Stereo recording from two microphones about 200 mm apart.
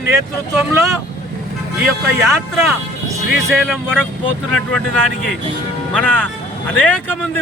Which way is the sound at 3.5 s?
Centre (ahead or behind).